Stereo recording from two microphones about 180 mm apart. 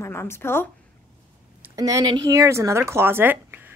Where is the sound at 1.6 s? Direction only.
20° right (ahead or behind).